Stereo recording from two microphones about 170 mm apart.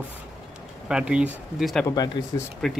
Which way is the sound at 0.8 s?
5° right (ahead or behind).